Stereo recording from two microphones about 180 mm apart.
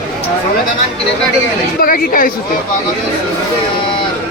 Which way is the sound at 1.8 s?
50° left (ahead or behind).